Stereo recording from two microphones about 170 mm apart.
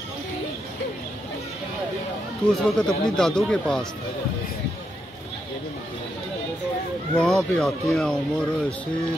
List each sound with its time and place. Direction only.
2.4 s speech: 5° left (ahead or behind)
7.2 s speech: centre (ahead or behind)